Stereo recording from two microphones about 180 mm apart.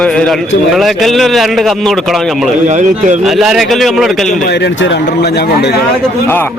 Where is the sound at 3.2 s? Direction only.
Centre (ahead or behind).